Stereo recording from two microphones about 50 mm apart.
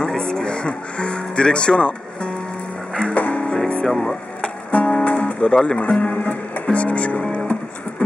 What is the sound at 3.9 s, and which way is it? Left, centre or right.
Speech, centre.